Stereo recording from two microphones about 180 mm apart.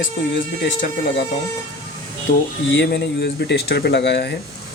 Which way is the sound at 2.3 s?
75° left (ahead or behind).